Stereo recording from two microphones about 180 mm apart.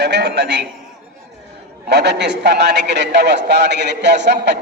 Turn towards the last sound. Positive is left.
turn(degrees=-75)  # may be behind; listen again after turning